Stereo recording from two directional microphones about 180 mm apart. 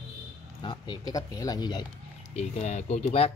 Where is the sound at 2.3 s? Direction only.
40° left (ahead or behind).